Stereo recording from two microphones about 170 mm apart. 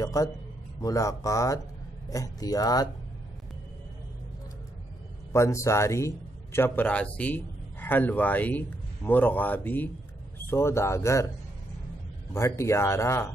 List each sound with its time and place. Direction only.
0.0 s a man's voice: 20° left (ahead or behind)
5.3 s a man's voice: 15° left (ahead or behind)
12.4 s a man's voice: 15° left (ahead or behind)